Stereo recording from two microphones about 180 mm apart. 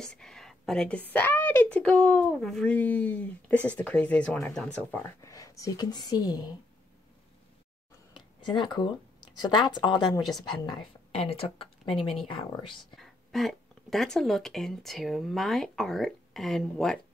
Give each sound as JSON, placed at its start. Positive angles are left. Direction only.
{"t": 0.0, "sound": "a woman's voice", "side_deg": 5}
{"t": 8.1, "sound": "a sound", "side_deg": 25}
{"t": 9.4, "sound": "speech", "side_deg": 25}
{"t": 12.9, "sound": "speech", "side_deg": 0}